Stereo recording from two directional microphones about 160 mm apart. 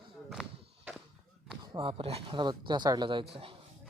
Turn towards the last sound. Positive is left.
turn(degrees=-35)  # may be behind; listen again after turning